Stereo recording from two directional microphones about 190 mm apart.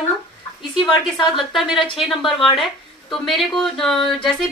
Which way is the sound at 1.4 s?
Centre (ahead or behind).